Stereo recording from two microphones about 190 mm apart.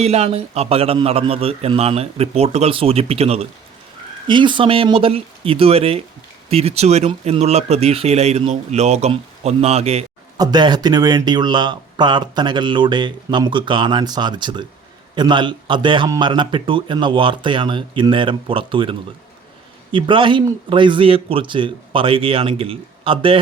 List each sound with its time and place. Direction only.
0.0 s speech: 35° right (ahead or behind)
10.3 s speech: 20° right (ahead or behind)